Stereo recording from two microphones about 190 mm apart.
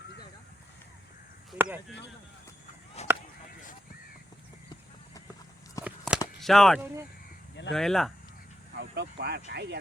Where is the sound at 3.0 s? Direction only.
35° left (ahead or behind).